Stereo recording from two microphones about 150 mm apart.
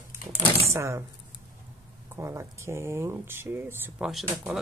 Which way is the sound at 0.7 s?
20° right (ahead or behind).